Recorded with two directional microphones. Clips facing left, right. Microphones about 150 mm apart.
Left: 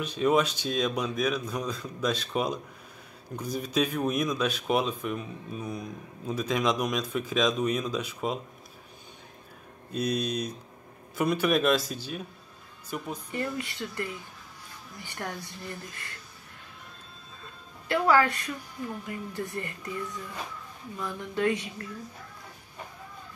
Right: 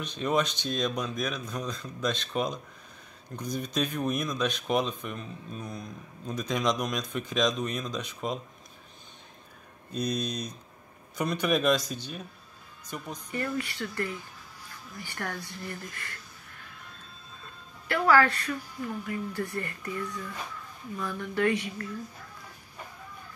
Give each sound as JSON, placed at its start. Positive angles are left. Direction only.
{"t": 0.0, "sound": "speech", "side_deg": 5}
{"t": 9.9, "sound": "speech", "side_deg": 5}
{"t": 13.3, "sound": "speech", "side_deg": 20}
{"t": 17.8, "sound": "speech", "side_deg": 20}
{"t": 21.0, "sound": "speech", "side_deg": 20}